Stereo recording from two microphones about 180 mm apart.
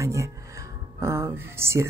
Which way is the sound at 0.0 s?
15° right (ahead or behind).